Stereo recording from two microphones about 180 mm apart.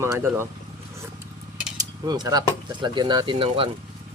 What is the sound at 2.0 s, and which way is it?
Speech, 20° right (ahead or behind).